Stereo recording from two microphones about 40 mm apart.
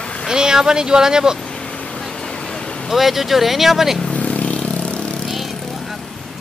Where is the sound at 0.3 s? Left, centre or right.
Centre.